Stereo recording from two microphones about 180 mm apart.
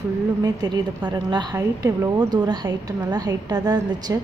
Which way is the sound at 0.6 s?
20° right (ahead or behind).